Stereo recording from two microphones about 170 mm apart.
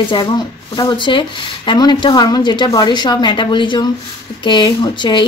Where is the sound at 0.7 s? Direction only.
25° left (ahead or behind).